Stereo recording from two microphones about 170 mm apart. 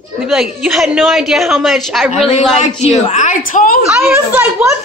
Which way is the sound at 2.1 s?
40° left (ahead or behind).